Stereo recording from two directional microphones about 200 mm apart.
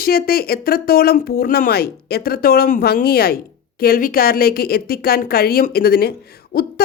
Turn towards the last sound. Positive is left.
turn(degrees=50)  # may be behind; listen again after turning